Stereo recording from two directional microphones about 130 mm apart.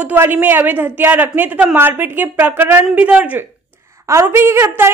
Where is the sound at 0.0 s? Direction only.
15° right (ahead or behind).